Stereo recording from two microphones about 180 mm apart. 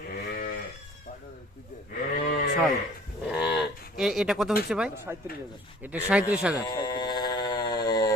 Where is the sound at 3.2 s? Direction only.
5° right (ahead or behind).